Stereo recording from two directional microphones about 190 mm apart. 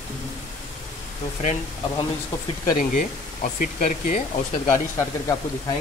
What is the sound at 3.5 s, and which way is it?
Speech, 45° left (ahead or behind).